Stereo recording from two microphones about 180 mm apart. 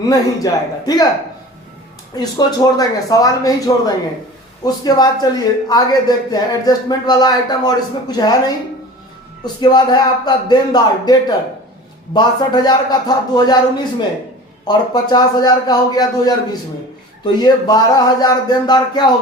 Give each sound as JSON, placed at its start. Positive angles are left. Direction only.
{"t": 0.1, "sound": "a man's voice", "side_deg": 20}
{"t": 2.1, "sound": "a man's voice", "side_deg": 20}
{"t": 14.7, "sound": "a man's voice", "side_deg": 25}